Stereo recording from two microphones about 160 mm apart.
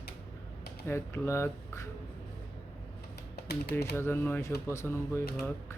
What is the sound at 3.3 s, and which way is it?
Music, 80° left.